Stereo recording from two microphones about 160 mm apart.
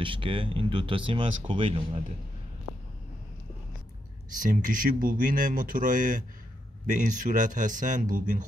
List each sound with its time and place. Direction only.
0.0 s speech: 35° right (ahead or behind)
4.4 s speech: 55° right (ahead or behind)